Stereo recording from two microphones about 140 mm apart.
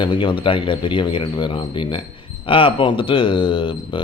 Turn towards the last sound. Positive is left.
turn(degrees=40)  # may be behind; listen again after turning